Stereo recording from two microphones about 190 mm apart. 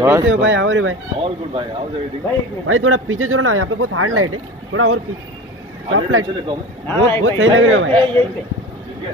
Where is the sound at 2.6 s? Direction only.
90° right.